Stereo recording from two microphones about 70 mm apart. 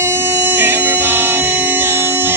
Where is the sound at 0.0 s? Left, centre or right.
Right.